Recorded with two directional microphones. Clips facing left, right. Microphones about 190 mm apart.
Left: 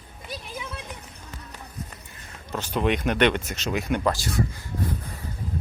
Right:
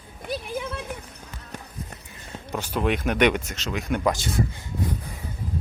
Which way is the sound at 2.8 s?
5° right (ahead or behind).